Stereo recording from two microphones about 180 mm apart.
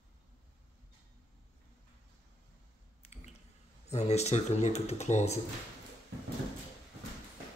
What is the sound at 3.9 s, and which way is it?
Speech, 35° left (ahead or behind).